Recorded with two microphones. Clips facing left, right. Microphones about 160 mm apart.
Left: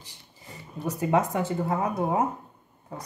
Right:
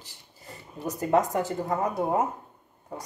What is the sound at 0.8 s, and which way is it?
Speech, 40° right (ahead or behind).